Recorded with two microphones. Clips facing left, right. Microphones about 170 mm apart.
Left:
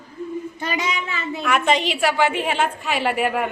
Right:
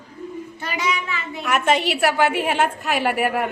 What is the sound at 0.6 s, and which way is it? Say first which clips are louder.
Child singing: right 2 dB; 20° left (ahead or behind).